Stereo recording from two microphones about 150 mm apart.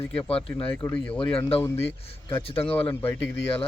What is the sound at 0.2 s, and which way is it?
Speech, 40° left (ahead or behind).